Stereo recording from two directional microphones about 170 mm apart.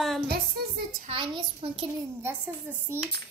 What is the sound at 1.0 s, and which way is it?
Speech, 30° right (ahead or behind).